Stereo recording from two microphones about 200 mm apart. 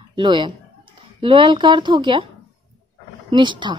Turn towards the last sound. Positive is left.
turn(degrees=-25)  # may be behind; listen again after turning